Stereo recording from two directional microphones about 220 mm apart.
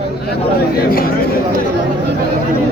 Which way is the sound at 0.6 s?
45° left (ahead or behind).